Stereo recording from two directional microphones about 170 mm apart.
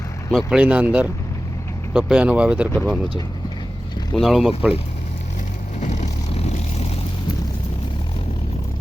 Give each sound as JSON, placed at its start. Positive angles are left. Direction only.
{"t": 0.3, "sound": "speech", "side_deg": -5}
{"t": 4.1, "sound": "speech", "side_deg": 0}
{"t": 5.8, "sound": "vehicle", "side_deg": 45}